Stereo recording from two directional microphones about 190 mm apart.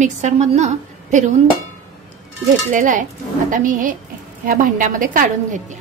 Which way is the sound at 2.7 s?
45° right (ahead or behind).